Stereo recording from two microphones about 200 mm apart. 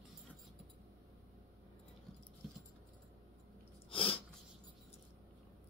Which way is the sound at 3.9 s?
25° left (ahead or behind).